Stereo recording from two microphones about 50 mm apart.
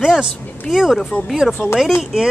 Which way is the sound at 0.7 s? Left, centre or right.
Centre.